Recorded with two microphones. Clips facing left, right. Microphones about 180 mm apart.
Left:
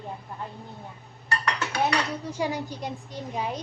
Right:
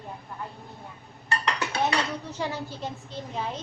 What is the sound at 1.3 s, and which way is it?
Dishes, 25° right (ahead or behind).